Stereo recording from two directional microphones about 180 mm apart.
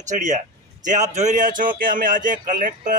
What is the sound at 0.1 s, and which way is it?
A man's voice, 40° right (ahead or behind).